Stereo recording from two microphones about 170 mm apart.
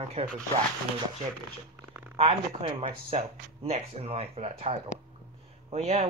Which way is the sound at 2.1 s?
35° right (ahead or behind).